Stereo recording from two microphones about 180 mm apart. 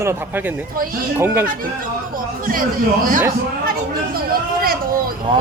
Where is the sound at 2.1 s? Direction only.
50° right (ahead or behind).